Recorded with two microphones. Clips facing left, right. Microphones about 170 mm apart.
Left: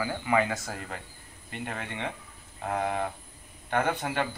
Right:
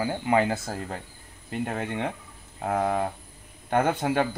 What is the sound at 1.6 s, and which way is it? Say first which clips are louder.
A man's voice: right 5 dB; 45° right (ahead or behind).